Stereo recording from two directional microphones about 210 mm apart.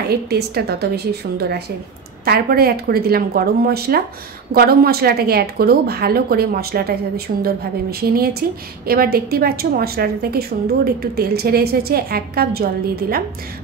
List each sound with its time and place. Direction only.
0.1 s speech: 50° right (ahead or behind)